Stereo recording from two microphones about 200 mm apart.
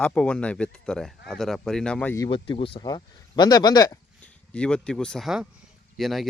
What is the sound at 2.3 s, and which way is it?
Speech, 25° left (ahead or behind).